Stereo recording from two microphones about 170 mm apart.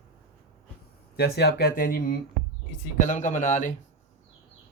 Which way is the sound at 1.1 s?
70° left (ahead or behind).